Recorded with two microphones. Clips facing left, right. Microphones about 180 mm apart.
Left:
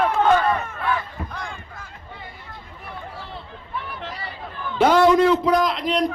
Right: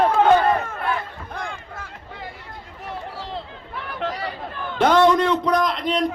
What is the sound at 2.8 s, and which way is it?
Run, 90° right.